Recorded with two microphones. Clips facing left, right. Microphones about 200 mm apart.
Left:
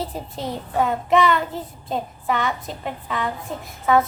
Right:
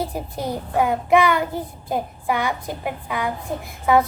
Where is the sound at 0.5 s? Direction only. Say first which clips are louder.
Right 1 dB; 10° right (ahead or behind).